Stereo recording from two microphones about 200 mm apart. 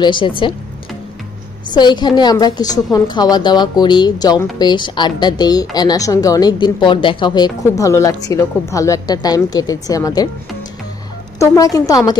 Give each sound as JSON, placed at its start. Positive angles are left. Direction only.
{"t": 0.0, "sound": "a woman's voice", "side_deg": 25}
{"t": 1.7, "sound": "a woman's voice", "side_deg": 20}
{"t": 11.3, "sound": "a woman's voice", "side_deg": 15}